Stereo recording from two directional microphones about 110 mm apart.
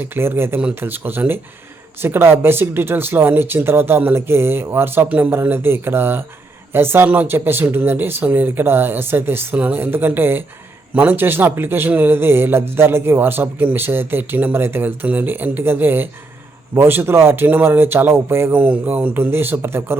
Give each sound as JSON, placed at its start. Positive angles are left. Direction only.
{"t": 0.0, "sound": "a man's voice", "side_deg": -20}